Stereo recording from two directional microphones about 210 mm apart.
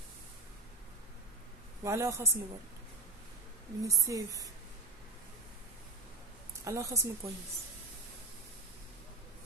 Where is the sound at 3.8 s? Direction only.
15° right (ahead or behind).